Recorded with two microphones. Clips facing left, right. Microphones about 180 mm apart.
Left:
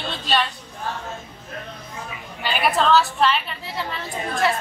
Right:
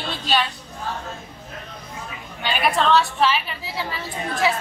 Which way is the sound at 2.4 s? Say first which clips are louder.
Even; 5° left (ahead or behind).